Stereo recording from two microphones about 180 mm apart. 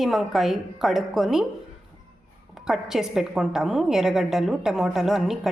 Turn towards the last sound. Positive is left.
turn(degrees=0)  # may be behind; listen again after turning